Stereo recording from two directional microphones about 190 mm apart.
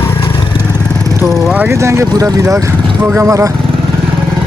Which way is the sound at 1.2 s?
5° right (ahead or behind).